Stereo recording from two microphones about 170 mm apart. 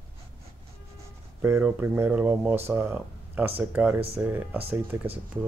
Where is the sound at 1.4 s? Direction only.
15° right (ahead or behind).